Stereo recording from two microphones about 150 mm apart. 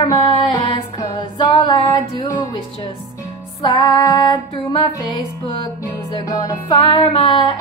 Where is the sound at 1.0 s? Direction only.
30° left (ahead or behind).